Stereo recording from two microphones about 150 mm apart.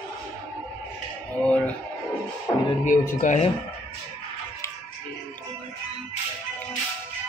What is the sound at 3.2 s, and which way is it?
Speech, 55° left (ahead or behind).